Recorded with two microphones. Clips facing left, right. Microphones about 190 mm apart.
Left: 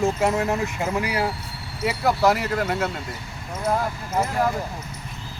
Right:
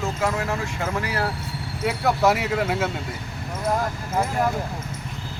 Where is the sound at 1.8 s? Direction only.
Centre (ahead or behind).